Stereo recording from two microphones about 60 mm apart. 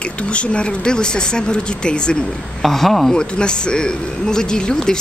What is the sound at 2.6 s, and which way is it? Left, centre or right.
Speech, centre.